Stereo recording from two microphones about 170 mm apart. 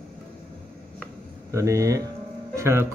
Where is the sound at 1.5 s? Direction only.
15° right (ahead or behind).